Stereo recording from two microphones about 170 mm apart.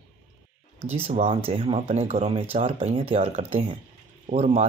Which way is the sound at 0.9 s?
40° right (ahead or behind).